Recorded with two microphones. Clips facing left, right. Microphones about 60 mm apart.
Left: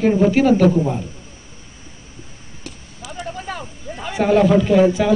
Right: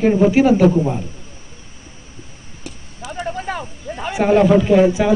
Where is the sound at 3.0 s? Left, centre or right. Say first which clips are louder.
Right 5 dB; right.